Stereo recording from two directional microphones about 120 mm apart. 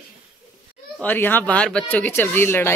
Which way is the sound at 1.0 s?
15° left (ahead or behind).